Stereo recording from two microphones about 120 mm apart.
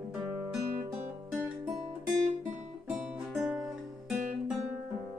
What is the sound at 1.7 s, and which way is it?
Music, 5° right (ahead or behind).